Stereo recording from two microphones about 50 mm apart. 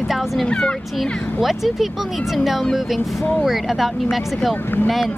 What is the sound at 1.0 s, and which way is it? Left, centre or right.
Speech, centre.